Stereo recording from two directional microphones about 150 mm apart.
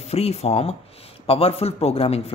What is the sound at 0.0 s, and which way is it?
Speech, 45° left (ahead or behind).